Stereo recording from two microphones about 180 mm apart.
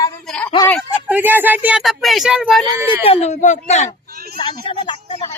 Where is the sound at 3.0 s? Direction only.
35° left (ahead or behind).